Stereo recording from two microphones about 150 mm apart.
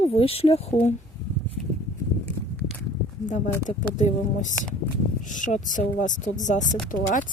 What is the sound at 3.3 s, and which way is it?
Speech, 55° left (ahead or behind).